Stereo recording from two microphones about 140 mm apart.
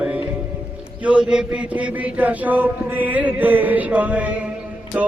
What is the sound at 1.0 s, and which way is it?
Mantra, 5° right (ahead or behind).